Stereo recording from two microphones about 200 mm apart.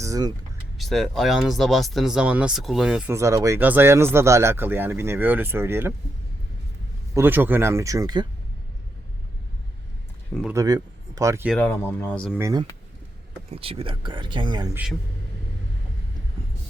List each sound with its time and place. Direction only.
0.0 s speech: 20° right (ahead or behind)
0.8 s speech: centre (ahead or behind)
3.1 s speech: 15° right (ahead or behind)
7.1 s speech: 10° right (ahead or behind)
10.5 s speech: 15° right (ahead or behind)
11.5 s speech: 10° left (ahead or behind)
12.3 s speech: 15° right (ahead or behind)
13.5 s speech: 30° right (ahead or behind)